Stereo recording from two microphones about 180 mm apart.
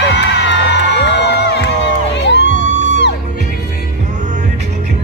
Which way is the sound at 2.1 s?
75° left (ahead or behind).